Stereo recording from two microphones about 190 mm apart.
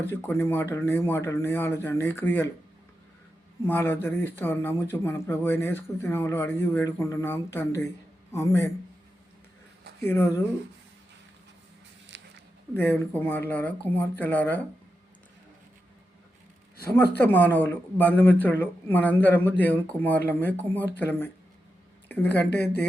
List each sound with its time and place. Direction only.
0.1 s speech: 10° left (ahead or behind)
3.6 s speech: 10° left (ahead or behind)
10.0 s speech: 10° left (ahead or behind)
12.1 s a sound: 70° right (ahead or behind)
12.7 s speech: 10° left (ahead or behind)
16.9 s speech: 10° left (ahead or behind)